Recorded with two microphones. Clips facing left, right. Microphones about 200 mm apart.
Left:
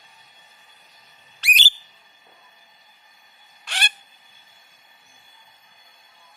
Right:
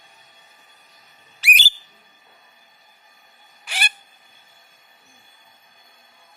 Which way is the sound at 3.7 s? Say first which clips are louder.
Right 1 dB; 10° right (ahead or behind).